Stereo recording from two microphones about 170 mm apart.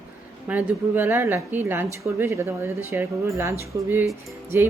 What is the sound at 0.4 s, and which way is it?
A woman's voice, 10° right (ahead or behind).